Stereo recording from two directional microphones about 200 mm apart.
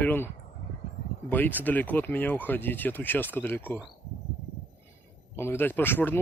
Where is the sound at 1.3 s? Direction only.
10° left (ahead or behind).